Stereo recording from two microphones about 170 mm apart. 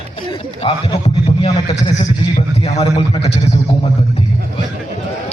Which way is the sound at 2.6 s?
35° left (ahead or behind).